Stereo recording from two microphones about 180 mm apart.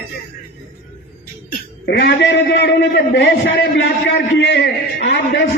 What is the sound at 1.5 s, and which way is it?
A man's voice, 65° left (ahead or behind).